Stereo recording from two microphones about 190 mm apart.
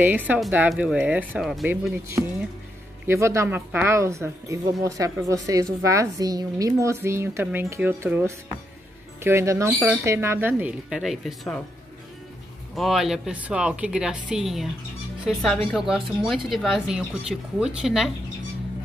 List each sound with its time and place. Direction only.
0.0 s speech: 10° right (ahead or behind)
3.1 s speech: 15° right (ahead or behind)
9.7 s speech: centre (ahead or behind)
10.0 s speech: 15° right (ahead or behind)
12.7 s speech: centre (ahead or behind)